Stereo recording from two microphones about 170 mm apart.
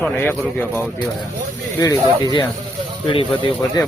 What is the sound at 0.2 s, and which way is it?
Speech, 10° left (ahead or behind).